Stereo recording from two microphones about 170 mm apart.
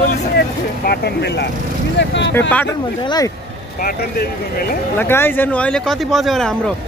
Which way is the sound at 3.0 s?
20° left (ahead or behind).